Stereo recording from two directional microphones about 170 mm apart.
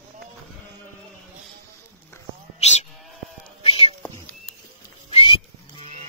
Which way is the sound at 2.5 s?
40° left (ahead or behind).